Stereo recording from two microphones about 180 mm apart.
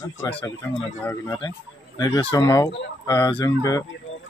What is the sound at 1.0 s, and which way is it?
A man's voice, 20° left (ahead or behind).